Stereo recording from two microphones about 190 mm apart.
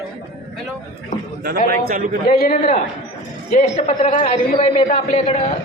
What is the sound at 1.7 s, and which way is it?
Speech, 50° right (ahead or behind).